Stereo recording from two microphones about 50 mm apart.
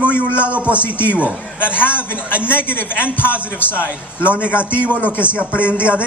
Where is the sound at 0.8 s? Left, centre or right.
Left.